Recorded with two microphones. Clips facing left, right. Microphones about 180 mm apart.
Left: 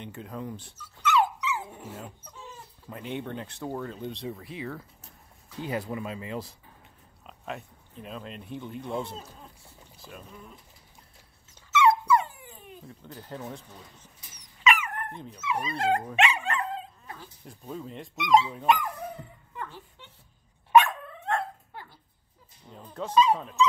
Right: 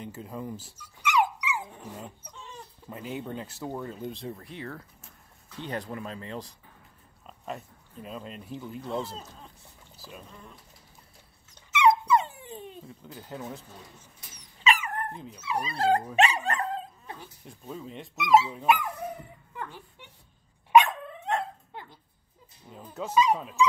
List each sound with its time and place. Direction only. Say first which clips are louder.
0.0 s speech: even; 5° right (ahead or behind)
2.5 s speech: right 3 dB; centre (ahead or behind)
9.9 s boat: even; 5° right (ahead or behind)
11.7 s dog: even; 20° right (ahead or behind)
12.8 s speech: even; 5° right (ahead or behind)
14.6 s dog: left 1 dB; 35° right (ahead or behind)
15.4 s speech: right 1 dB; 35° right (ahead or behind)
16.2 s dog: right 2 dB; 35° right (ahead or behind)
17.5 s speech: left 2 dB; centre (ahead or behind)
20.7 s dog: even; 20° right (ahead or behind)
22.7 s speech: even; 5° right (ahead or behind)